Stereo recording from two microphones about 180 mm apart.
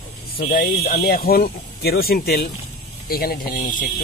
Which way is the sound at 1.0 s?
55° left (ahead or behind).